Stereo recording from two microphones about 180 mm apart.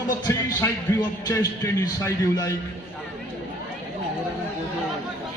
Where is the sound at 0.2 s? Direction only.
15° left (ahead or behind).